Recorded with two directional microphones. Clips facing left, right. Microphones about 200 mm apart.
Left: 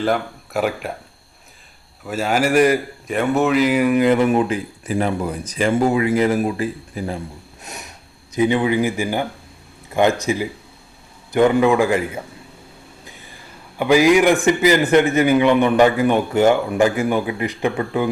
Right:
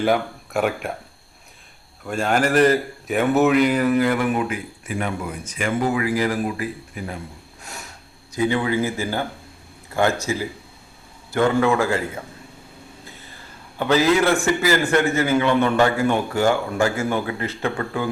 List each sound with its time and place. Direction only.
0.0 s speech: centre (ahead or behind)
2.0 s a man's voice: 5° left (ahead or behind)
3.1 s a man's voice: centre (ahead or behind); by 7.2 s 30° left (ahead or behind)
7.6 s a man's voice: 20° left (ahead or behind)
13.7 s a man's voice: 15° left (ahead or behind)